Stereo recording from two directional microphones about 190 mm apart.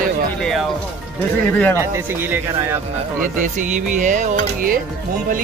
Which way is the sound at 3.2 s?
40° right (ahead or behind).